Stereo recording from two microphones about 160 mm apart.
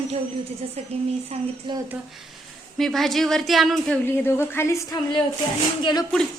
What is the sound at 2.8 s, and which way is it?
A woman's voice, centre (ahead or behind).